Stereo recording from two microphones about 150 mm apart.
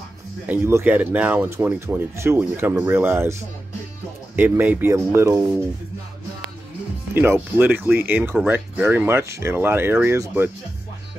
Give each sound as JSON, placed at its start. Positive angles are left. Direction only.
{"t": 0.5, "sound": "speech", "side_deg": -15}
{"t": 4.4, "sound": "speech", "side_deg": -15}
{"t": 7.3, "sound": "speech", "side_deg": -10}